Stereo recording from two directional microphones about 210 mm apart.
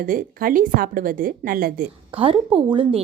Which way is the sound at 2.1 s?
25° right (ahead or behind).